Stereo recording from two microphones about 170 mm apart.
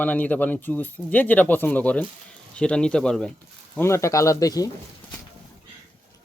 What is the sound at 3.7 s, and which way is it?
Speech, 15° left (ahead or behind).